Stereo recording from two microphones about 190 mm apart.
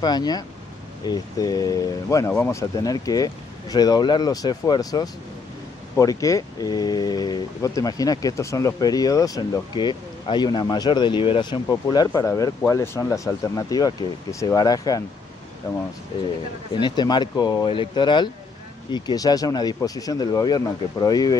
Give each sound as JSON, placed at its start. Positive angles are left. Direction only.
{"t": 0.0, "sound": "speech", "side_deg": 20}
{"t": 16.8, "sound": "speech", "side_deg": 20}